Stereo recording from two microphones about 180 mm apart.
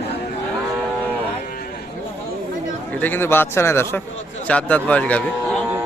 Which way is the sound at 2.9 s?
10° left (ahead or behind).